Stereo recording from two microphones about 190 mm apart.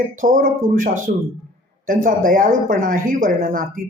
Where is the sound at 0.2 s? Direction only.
45° right (ahead or behind).